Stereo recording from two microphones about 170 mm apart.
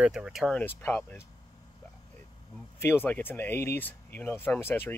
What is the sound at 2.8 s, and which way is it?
Speech, 15° left (ahead or behind).